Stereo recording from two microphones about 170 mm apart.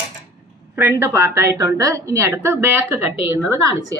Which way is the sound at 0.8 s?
15° right (ahead or behind).